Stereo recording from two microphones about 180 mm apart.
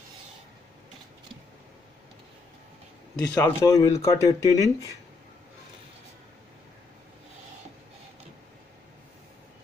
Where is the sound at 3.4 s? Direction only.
20° left (ahead or behind).